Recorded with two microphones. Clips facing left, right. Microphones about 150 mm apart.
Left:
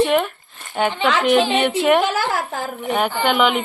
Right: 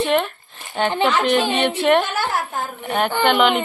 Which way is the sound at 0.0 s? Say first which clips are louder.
Left 2 dB; 5° left (ahead or behind).